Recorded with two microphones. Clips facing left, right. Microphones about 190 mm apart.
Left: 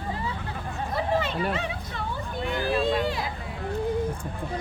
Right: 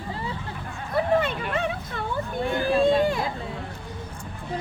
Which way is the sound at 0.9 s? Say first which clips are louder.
Right 4 dB; 55° right (ahead or behind).